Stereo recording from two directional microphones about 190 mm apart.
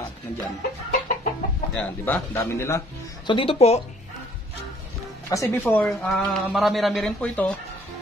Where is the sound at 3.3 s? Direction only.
30° left (ahead or behind).